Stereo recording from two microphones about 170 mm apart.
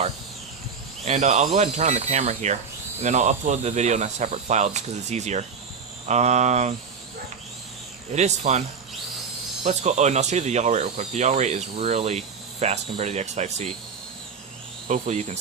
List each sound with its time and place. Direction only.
1.0 s speech: 40° right (ahead or behind)
8.1 s speech: 40° right (ahead or behind)
9.6 s speech: 40° right (ahead or behind)
14.8 s speech: 40° right (ahead or behind)